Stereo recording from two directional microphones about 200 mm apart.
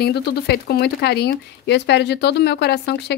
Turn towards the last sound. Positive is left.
turn(degrees=55)  # may be behind; listen again after turning